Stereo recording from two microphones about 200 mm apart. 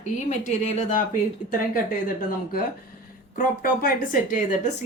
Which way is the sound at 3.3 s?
45° left (ahead or behind).